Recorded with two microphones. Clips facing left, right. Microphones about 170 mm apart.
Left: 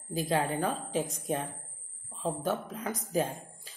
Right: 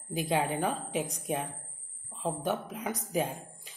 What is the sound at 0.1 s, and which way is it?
Speech, 15° right (ahead or behind).